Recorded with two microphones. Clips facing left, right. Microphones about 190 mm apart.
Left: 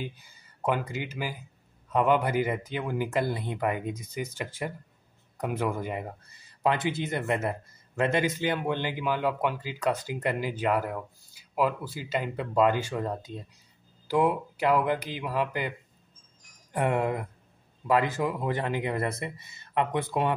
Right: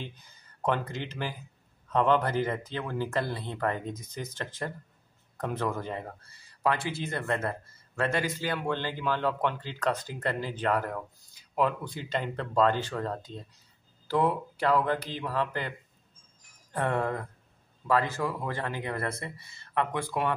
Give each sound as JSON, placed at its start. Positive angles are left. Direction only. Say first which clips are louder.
{"t": 0.0, "sound": "speech", "louder": "left 4 dB", "side_deg": 10}
{"t": 16.7, "sound": "speech", "louder": "left 2 dB", "side_deg": 15}